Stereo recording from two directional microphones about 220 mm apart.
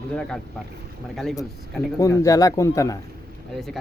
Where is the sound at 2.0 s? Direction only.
15° left (ahead or behind).